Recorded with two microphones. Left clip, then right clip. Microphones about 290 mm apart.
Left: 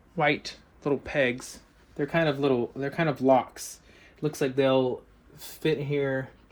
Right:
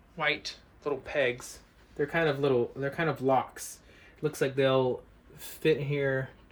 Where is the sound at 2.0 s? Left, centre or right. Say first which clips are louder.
Left 2 dB; centre.